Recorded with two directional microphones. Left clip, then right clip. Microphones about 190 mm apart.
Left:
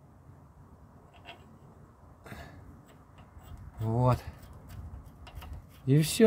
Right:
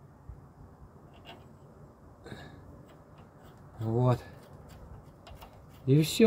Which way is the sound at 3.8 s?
45° left (ahead or behind).